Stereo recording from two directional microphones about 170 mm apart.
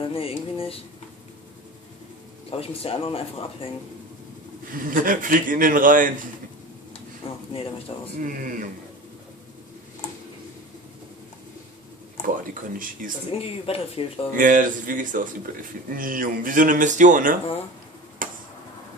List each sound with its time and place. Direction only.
0.0 s speech: 35° left (ahead or behind)
2.5 s speech: 35° left (ahead or behind)
4.7 s a man's voice: 55° right (ahead or behind)
7.2 s a sound: 35° left (ahead or behind)
8.2 s a man's voice: 55° right (ahead or behind)
12.7 s a man's voice: 55° right (ahead or behind)
13.3 s speech: 35° left (ahead or behind)
14.3 s a man's voice: 50° right (ahead or behind)
18.2 s tick-tock: 55° right (ahead or behind)